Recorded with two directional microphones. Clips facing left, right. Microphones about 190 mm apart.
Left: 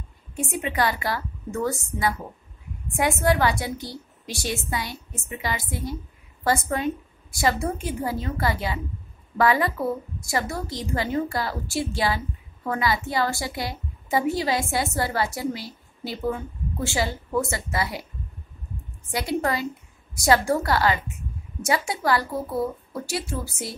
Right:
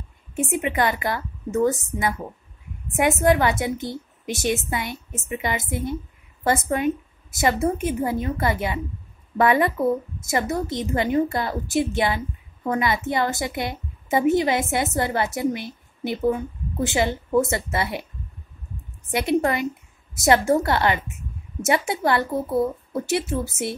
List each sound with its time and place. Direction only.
0.4 s a woman's voice: 20° right (ahead or behind)
19.0 s a woman's voice: 20° right (ahead or behind)